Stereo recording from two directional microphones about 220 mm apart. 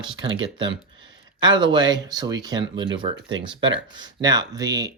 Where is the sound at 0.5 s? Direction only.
20° right (ahead or behind).